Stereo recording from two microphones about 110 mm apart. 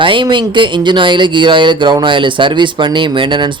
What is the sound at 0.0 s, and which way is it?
Speech, 50° right (ahead or behind).